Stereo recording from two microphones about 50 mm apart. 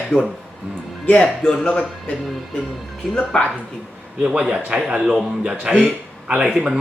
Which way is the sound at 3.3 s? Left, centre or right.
Left.